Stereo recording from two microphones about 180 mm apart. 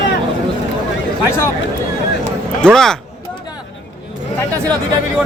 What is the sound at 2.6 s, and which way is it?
Speech, 5° left (ahead or behind).